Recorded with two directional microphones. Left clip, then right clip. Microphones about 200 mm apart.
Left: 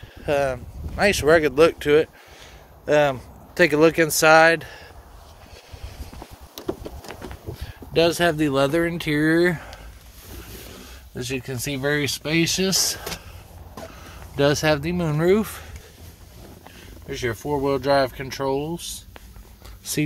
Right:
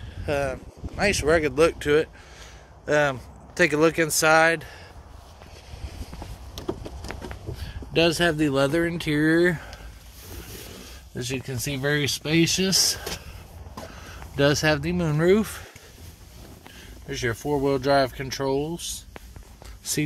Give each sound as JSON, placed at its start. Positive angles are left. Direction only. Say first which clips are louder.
{"t": 0.2, "sound": "speech", "louder": "left 4 dB", "side_deg": 25}
{"t": 6.5, "sound": "a sound", "louder": "left 2 dB", "side_deg": 30}
{"t": 7.1, "sound": "speech", "louder": "right 2 dB", "side_deg": 5}
{"t": 11.1, "sound": "speech", "louder": "left 2 dB", "side_deg": 0}
{"t": 14.3, "sound": "speech", "louder": "left 2 dB", "side_deg": 0}
{"t": 17.1, "sound": "speech", "louder": "left 1 dB", "side_deg": -5}